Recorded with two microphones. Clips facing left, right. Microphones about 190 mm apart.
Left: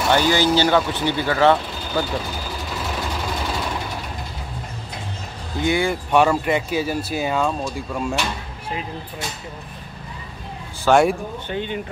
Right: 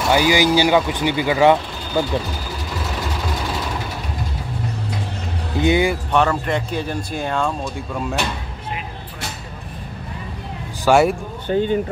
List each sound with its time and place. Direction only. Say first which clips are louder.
0.1 s speech: right 2 dB; 10° right (ahead or behind)
5.6 s speech: right 4 dB; 20° right (ahead or behind)
6.1 s speech: left 3 dB; 10° left (ahead or behind)
10.9 s speech: right 1 dB; 5° right (ahead or behind)
11.4 s speech: right 10 dB; 40° right (ahead or behind)